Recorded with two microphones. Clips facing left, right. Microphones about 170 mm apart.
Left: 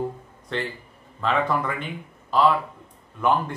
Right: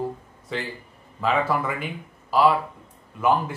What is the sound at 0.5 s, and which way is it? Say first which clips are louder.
A man's voice: left 1 dB; 5° right (ahead or behind).